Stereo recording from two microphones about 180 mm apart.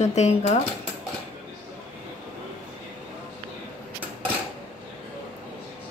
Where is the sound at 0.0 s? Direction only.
40° left (ahead or behind).